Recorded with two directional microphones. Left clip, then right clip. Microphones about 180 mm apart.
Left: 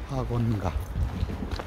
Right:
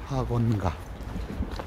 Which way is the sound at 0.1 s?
20° right (ahead or behind).